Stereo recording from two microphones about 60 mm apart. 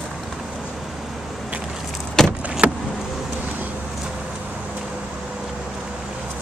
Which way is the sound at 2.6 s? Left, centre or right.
Right.